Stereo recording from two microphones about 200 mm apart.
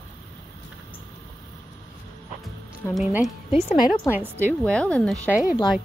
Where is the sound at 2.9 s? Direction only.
Centre (ahead or behind).